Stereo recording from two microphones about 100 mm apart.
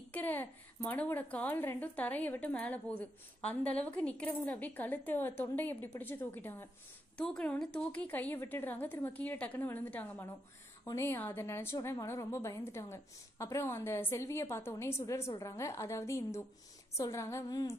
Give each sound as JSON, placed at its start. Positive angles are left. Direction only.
{"t": 0.1, "sound": "a child's voice", "side_deg": 20}
{"t": 7.2, "sound": "a woman's voice", "side_deg": 10}